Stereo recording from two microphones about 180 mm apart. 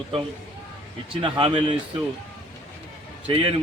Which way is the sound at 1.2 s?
30° right (ahead or behind).